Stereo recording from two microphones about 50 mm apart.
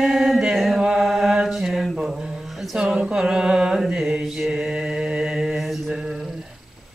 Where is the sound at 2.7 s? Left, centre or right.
Centre.